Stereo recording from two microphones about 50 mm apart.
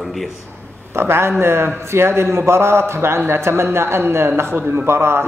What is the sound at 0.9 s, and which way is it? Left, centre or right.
A man's voice, right.